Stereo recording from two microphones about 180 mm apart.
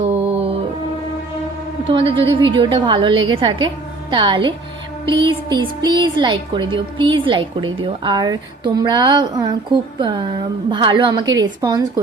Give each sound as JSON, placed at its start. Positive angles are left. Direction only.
{"t": 0.1, "sound": "music", "side_deg": -35}
{"t": 1.9, "sound": "speech", "side_deg": -30}